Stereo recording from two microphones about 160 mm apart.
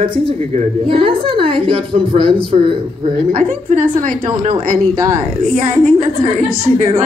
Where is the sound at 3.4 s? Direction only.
55° right (ahead or behind).